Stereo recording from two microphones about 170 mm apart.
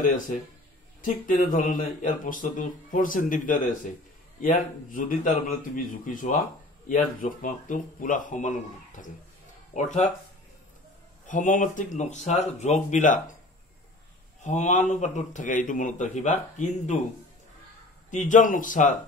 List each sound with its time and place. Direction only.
1.0 s speech: 50° left (ahead or behind)
11.2 s speech: 50° left (ahead or behind)
14.4 s speech: 45° left (ahead or behind)
18.1 s speech: 45° left (ahead or behind)